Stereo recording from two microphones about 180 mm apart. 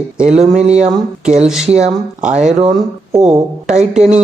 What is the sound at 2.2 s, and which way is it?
Speech, 40° right (ahead or behind).